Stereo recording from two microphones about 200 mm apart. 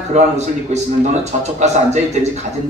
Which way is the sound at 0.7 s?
35° right (ahead or behind).